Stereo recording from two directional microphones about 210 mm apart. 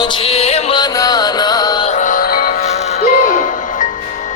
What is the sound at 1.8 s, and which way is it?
Music, 35° left (ahead or behind).